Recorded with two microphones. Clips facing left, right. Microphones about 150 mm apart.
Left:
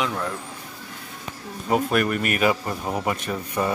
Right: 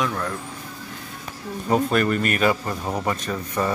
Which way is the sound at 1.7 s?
5° left (ahead or behind).